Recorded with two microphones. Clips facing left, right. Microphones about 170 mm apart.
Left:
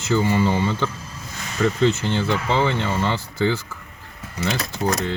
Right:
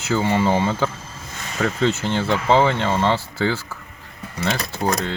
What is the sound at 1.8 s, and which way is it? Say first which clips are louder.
Speech: right 2 dB; 90° right.